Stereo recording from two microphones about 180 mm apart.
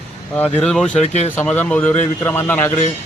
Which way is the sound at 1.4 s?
10° left (ahead or behind).